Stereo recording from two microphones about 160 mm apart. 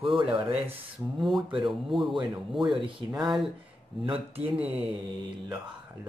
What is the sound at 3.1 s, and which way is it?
Speech, 30° right (ahead or behind).